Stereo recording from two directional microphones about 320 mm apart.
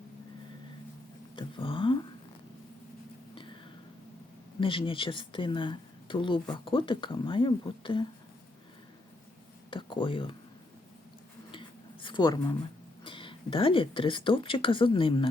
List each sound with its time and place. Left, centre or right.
1.4 s speech: centre
3.3 s a sound: centre
4.6 s speech: centre
9.6 s speech: centre
12.0 s speech: centre